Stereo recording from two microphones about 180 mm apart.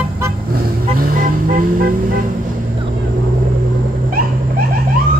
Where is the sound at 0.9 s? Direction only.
50° right (ahead or behind).